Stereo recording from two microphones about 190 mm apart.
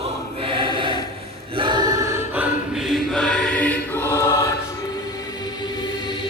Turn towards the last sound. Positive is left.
turn(degrees=10)  # may be behind; listen again after turning